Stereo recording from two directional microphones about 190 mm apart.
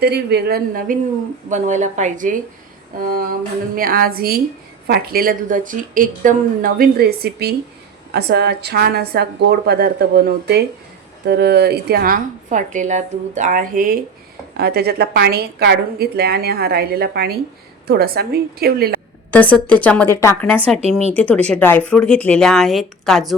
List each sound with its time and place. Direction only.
0.0 s a woman's voice: 60° right (ahead or behind)
19.3 s a woman's voice: 10° left (ahead or behind)